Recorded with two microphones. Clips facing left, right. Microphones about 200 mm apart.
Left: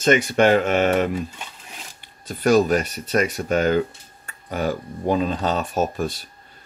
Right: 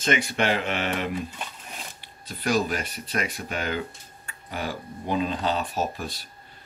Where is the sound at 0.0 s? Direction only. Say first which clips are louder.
Left 8 dB; 45° left (ahead or behind).